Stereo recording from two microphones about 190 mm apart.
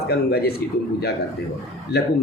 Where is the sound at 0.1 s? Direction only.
55° left (ahead or behind).